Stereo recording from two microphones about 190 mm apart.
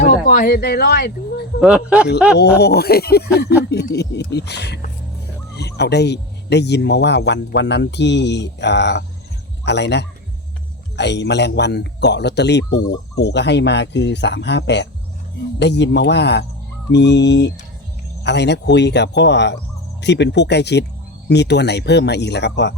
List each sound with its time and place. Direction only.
0.0 s speech: 50° left (ahead or behind)
1.6 s speech: 5° right (ahead or behind)
2.6 s a man's voice: 55° left (ahead or behind)